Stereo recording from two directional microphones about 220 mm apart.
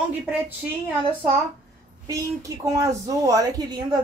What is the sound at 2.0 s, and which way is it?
Speech, 15° right (ahead or behind).